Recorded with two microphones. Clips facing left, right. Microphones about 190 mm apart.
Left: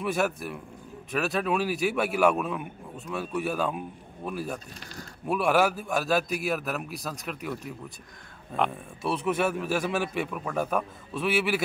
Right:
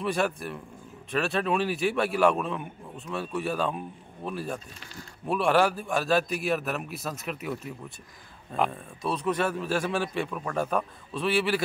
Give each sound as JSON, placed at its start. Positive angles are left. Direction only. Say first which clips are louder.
{"t": 0.0, "sound": "a man's voice", "louder": "even", "side_deg": 5}
{"t": 8.7, "sound": "speech", "louder": "left 1 dB", "side_deg": 10}